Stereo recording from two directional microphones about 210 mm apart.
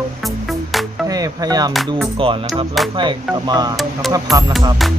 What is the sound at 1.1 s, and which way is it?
Music, 15° right (ahead or behind).